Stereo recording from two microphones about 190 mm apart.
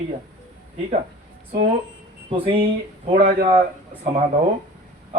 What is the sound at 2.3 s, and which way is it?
Speech, 30° right (ahead or behind).